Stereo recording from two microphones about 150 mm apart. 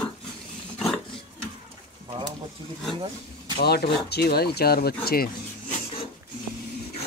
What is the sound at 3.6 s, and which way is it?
Speech, 90° left.